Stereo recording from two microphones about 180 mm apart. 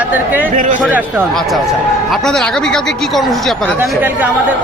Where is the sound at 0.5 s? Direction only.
45° right (ahead or behind).